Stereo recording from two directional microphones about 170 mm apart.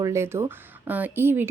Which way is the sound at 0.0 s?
15° right (ahead or behind).